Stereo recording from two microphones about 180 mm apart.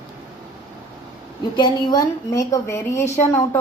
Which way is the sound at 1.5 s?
25° left (ahead or behind).